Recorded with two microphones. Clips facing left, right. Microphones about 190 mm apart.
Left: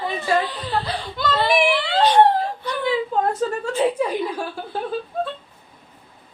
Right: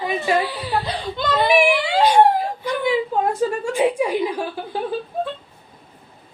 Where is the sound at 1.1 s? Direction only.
15° right (ahead or behind).